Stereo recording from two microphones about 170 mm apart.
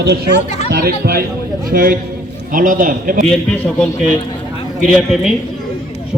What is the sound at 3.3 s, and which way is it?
Speech, 10° left (ahead or behind).